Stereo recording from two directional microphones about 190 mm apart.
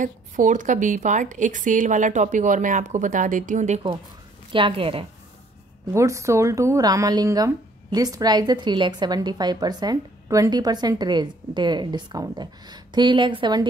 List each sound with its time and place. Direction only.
0.0 s a woman's voice: 40° right (ahead or behind)
4.5 s speech: 25° right (ahead or behind)
5.9 s speech: 15° right (ahead or behind)